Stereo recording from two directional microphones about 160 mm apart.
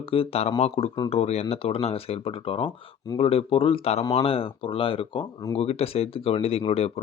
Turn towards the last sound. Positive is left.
turn(degrees=40)  # may be behind; listen again after turning